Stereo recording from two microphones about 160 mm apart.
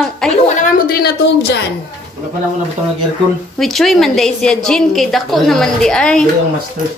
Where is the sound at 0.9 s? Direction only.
80° left.